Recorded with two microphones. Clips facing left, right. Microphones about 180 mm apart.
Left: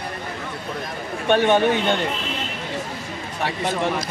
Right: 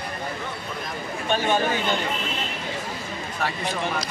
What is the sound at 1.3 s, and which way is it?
Speech, 65° left (ahead or behind).